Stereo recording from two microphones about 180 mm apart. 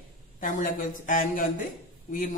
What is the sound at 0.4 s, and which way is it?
A man's voice, 50° left (ahead or behind).